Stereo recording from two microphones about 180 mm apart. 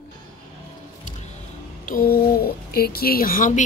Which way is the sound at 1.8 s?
55° left (ahead or behind).